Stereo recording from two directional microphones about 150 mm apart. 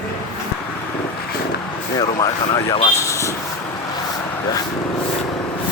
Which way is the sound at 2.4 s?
30° left (ahead or behind).